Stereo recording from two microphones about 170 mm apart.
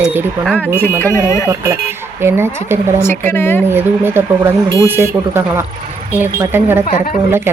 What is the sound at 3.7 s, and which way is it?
A woman's voice, 15° right (ahead or behind).